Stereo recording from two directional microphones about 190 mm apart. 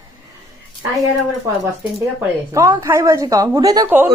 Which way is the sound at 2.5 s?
15° right (ahead or behind).